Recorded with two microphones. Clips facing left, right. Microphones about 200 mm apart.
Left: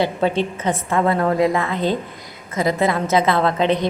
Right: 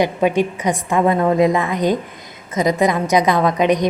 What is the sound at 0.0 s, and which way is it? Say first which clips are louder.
A woman's voice: right 3 dB; 15° right (ahead or behind).